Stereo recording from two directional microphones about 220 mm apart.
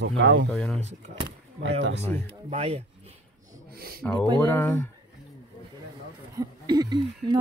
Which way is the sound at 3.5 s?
45° right (ahead or behind).